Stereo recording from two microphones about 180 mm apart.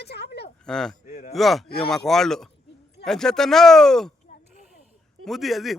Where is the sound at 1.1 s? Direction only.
40° left (ahead or behind).